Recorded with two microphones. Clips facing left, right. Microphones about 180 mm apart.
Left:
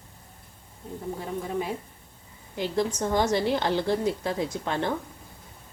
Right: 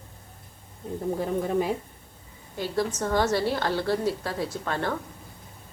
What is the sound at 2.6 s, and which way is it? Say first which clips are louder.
A woman's voice: left 1 dB; 15° left (ahead or behind).